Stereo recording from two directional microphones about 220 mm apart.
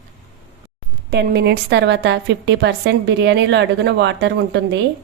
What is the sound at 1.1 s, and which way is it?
A woman's voice, 50° right (ahead or behind).